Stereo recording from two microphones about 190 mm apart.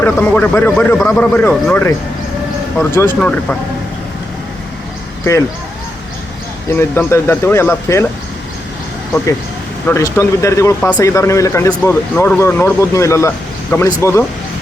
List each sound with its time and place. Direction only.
0.0 s speech: 10° left (ahead or behind)
6.7 s speech: 10° left (ahead or behind)
9.8 s speech: 15° left (ahead or behind)